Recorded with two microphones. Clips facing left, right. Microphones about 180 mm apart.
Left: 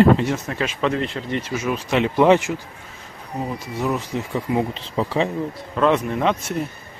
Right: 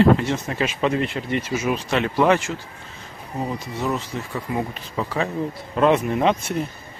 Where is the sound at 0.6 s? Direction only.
10° right (ahead or behind).